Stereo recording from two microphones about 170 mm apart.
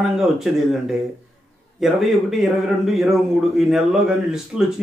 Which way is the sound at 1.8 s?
Centre (ahead or behind).